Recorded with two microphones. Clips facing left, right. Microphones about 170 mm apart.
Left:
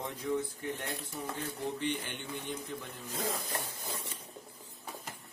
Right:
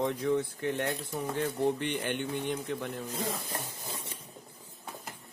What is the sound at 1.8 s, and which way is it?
Speech, 65° right (ahead or behind).